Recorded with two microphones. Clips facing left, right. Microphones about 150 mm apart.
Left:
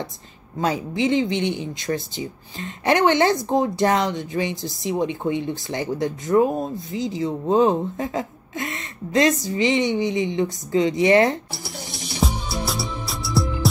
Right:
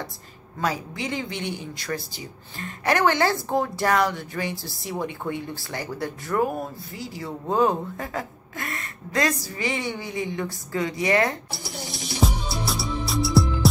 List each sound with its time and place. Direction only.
0.6 s speech: 25° left (ahead or behind)
11.5 s music: centre (ahead or behind)